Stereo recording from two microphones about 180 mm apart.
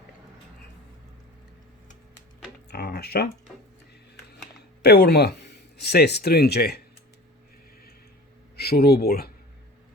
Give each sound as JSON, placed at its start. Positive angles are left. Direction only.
{"t": 2.6, "sound": "speech", "side_deg": 65}
{"t": 4.8, "sound": "speech", "side_deg": 65}
{"t": 8.5, "sound": "speech", "side_deg": 60}